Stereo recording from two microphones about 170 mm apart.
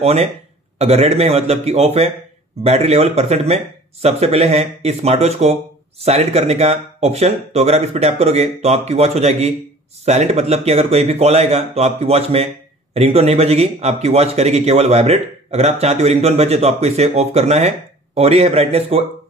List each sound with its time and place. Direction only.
0.0 s speech: 40° right (ahead or behind)